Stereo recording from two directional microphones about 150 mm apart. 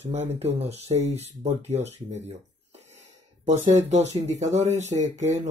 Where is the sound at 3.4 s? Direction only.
50° right (ahead or behind).